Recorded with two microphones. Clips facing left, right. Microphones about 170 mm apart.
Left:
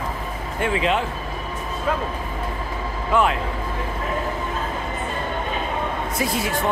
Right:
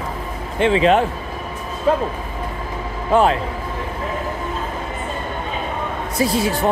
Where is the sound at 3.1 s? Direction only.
35° right (ahead or behind).